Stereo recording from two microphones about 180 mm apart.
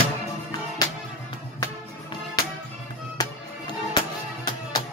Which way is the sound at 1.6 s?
25° left (ahead or behind).